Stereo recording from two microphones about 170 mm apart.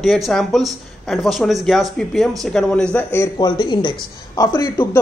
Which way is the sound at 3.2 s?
25° left (ahead or behind).